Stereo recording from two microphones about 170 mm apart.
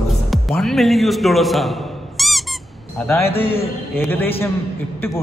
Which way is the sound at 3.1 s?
15° left (ahead or behind).